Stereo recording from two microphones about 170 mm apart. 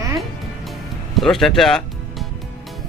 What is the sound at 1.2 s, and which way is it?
Music, centre (ahead or behind).